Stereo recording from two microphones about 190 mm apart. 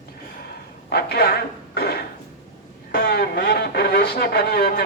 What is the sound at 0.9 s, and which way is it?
Speech, 60° left (ahead or behind).